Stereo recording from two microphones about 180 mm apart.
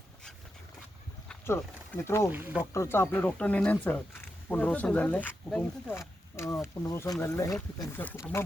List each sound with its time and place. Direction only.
1.3 s speech: 10° left (ahead or behind)
2.3 s speech: 10° right (ahead or behind)
2.7 s speech: 15° left (ahead or behind)